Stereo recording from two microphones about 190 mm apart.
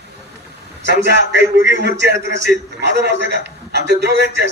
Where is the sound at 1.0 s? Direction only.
65° right (ahead or behind).